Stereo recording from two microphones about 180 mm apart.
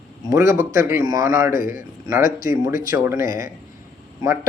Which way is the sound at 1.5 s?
50° left (ahead or behind).